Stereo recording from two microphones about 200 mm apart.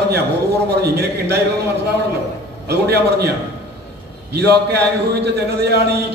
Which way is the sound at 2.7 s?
55° right (ahead or behind).